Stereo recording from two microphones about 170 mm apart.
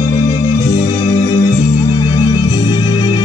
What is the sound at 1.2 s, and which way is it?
Music, 20° left (ahead or behind).